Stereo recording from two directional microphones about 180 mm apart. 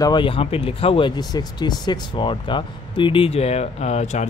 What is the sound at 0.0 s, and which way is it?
Speech, 25° left (ahead or behind).